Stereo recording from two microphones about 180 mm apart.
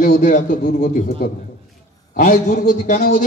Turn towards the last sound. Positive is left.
turn(degrees=50)  # may be behind; listen again after turning